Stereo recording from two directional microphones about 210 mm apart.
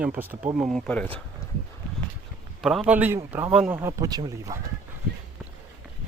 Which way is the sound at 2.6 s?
5° right (ahead or behind).